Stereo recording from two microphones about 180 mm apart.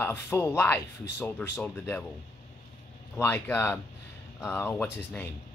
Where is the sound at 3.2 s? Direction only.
10° left (ahead or behind).